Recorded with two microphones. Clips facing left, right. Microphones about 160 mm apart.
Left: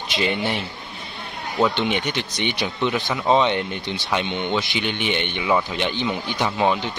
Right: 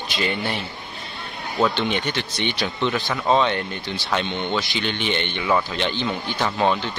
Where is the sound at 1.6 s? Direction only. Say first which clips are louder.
Left 1 dB; 15° left (ahead or behind).